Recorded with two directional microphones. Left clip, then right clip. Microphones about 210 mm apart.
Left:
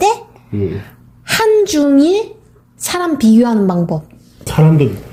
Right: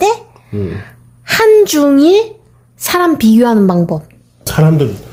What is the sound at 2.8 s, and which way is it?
Mantra, 15° right (ahead or behind).